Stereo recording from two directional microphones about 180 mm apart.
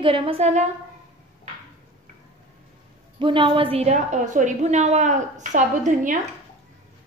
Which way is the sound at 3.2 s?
25° right (ahead or behind).